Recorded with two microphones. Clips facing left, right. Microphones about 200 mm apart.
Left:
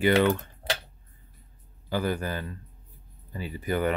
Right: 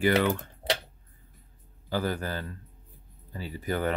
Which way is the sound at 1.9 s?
15° left (ahead or behind).